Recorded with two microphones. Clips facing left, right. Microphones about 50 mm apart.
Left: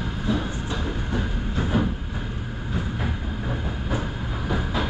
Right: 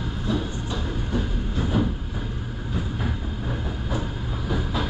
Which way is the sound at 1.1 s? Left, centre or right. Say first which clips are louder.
Right 1 dB; left.